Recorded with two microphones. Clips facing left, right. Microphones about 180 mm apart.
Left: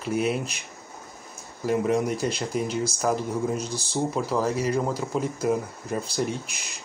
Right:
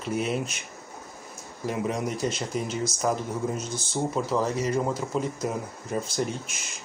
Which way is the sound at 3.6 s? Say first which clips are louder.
Left 2 dB; 35° left (ahead or behind).